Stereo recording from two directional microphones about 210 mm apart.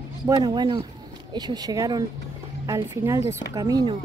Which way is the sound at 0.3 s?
20° right (ahead or behind).